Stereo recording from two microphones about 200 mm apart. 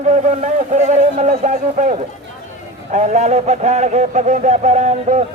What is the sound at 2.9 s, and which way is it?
A man's voice, 35° right (ahead or behind).